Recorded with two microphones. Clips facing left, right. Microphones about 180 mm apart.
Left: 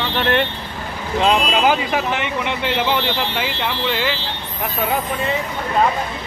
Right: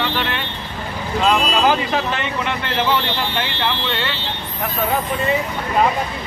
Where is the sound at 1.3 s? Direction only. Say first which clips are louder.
Even; 15° left (ahead or behind).